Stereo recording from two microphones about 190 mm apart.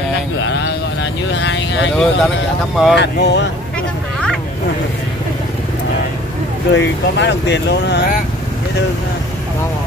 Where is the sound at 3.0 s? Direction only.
65° left (ahead or behind).